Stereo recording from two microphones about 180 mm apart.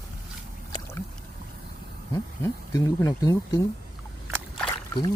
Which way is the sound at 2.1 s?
20° left (ahead or behind).